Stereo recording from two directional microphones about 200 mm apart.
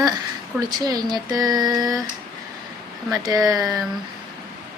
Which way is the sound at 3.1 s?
15° right (ahead or behind).